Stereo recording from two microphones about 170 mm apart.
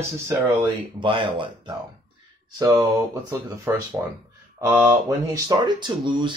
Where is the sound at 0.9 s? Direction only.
30° right (ahead or behind).